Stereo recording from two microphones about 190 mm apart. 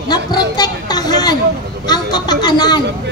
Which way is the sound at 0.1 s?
20° left (ahead or behind).